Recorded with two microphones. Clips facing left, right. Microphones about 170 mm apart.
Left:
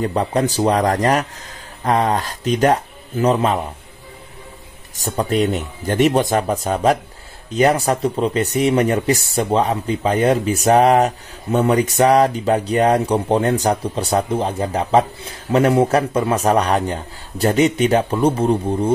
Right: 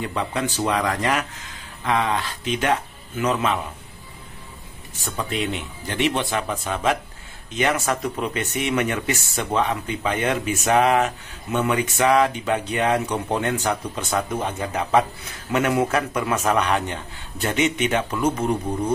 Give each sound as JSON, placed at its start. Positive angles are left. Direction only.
{"t": 0.0, "sound": "speech", "side_deg": 40}
{"t": 5.0, "sound": "speech", "side_deg": 40}